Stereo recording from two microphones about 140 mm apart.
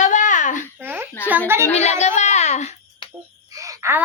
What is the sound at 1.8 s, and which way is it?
Speech, 55° left (ahead or behind).